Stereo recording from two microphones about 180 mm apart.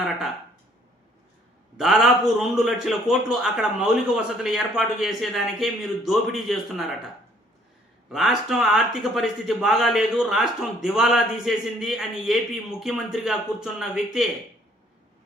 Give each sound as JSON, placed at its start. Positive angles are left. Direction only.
{"t": 1.7, "sound": "a man's voice", "side_deg": 0}
{"t": 8.1, "sound": "a man's voice", "side_deg": 0}